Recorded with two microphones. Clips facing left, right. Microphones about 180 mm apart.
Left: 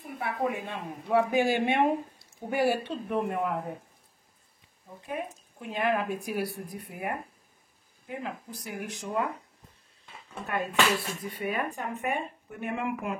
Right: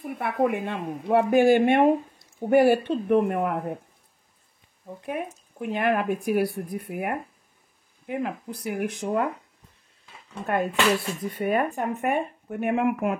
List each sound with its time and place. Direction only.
0.2 s speech: 65° right (ahead or behind)
5.0 s speech: 60° right (ahead or behind)
10.4 s speech: 55° right (ahead or behind)